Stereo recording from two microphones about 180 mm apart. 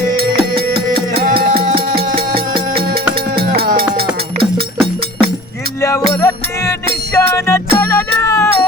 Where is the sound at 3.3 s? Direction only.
55° right (ahead or behind).